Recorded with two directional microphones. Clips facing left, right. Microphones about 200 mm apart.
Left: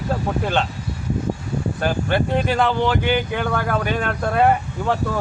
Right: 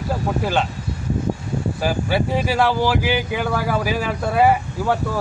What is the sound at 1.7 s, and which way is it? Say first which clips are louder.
A man's voice: even; 5° right (ahead or behind).